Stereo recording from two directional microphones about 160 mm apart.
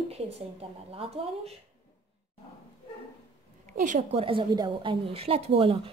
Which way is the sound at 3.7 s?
45° right (ahead or behind).